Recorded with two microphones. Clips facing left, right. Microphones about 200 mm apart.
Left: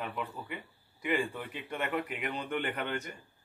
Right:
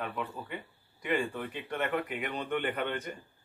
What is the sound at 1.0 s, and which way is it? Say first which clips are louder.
Speech: right 1 dB; 5° left (ahead or behind).